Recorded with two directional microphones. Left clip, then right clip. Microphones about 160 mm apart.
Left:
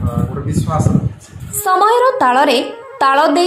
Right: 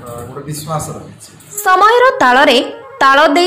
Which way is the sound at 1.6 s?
40° right (ahead or behind).